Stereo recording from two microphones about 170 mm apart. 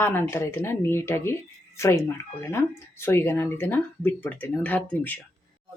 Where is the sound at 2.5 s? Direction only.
15° left (ahead or behind).